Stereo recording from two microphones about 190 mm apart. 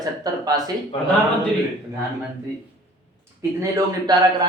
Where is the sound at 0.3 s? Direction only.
20° right (ahead or behind).